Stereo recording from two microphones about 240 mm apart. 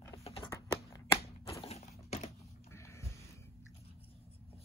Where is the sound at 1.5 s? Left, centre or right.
Left.